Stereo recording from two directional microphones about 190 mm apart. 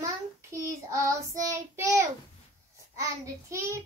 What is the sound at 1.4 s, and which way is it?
A child's voice, 15° right (ahead or behind).